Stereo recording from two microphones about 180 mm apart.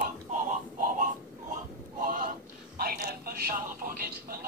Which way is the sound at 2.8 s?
55° right (ahead or behind).